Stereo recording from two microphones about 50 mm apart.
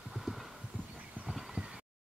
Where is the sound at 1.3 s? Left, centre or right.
Centre.